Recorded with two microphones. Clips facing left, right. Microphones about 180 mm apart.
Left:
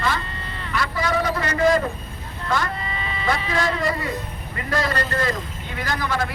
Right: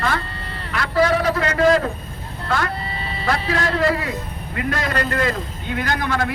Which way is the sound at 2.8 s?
35° right (ahead or behind).